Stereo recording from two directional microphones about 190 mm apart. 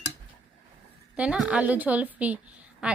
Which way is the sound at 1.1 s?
5° right (ahead or behind).